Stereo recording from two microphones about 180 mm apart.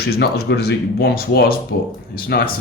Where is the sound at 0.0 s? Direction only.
60° left (ahead or behind).